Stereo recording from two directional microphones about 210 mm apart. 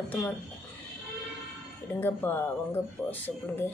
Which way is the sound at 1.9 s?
10° left (ahead or behind).